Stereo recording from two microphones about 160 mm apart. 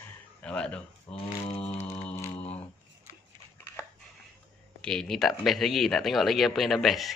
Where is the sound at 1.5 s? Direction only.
10° left (ahead or behind).